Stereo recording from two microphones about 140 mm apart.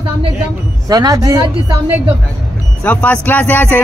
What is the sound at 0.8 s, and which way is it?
Speech, 25° right (ahead or behind).